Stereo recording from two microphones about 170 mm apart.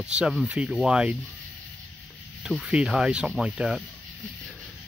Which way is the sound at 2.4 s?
5° right (ahead or behind).